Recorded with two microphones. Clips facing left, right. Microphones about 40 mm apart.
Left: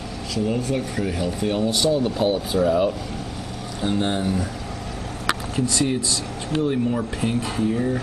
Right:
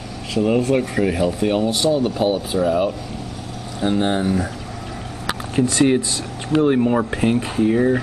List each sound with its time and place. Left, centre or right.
0.3 s speech: right
0.9 s speech: centre
5.6 s speech: right